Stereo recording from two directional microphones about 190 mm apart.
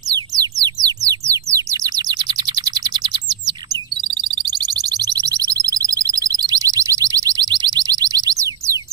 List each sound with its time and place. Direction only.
0.1 s bird: 20° right (ahead or behind)
4.2 s music: 20° right (ahead or behind)
5.1 s alarm: 20° right (ahead or behind)